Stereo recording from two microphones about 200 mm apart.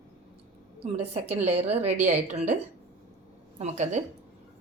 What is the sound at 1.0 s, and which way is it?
A woman's voice, 35° right (ahead or behind).